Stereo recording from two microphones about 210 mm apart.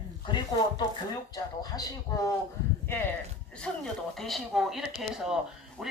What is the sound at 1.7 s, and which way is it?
Speech, 20° left (ahead or behind).